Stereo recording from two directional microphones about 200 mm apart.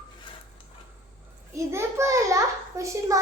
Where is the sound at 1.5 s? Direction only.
15° right (ahead or behind).